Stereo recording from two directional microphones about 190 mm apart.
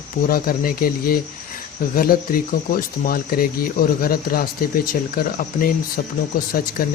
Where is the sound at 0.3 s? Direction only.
50° left (ahead or behind).